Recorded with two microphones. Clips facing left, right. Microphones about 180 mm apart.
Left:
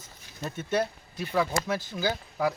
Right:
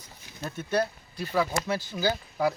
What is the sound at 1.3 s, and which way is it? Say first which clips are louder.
Speech: even; 5° right (ahead or behind).